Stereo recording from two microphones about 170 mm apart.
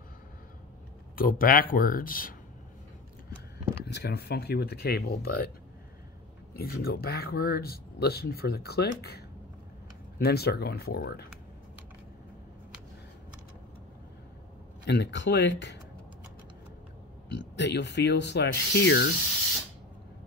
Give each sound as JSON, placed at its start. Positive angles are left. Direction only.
{"t": 1.1, "sound": "speech", "side_deg": 60}
{"t": 3.8, "sound": "speech", "side_deg": 75}
{"t": 6.5, "sound": "speech", "side_deg": 60}
{"t": 14.9, "sound": "speech", "side_deg": 90}
{"t": 17.3, "sound": "speech", "side_deg": 90}